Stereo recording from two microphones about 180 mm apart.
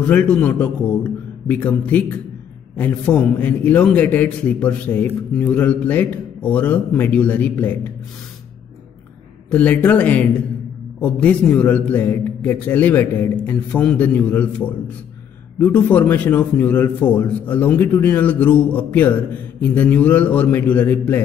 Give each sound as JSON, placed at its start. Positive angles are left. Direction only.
{"t": 0.0, "sound": "a man's voice", "side_deg": 5}
{"t": 2.8, "sound": "a man's voice", "side_deg": 5}
{"t": 9.5, "sound": "a man's voice", "side_deg": 5}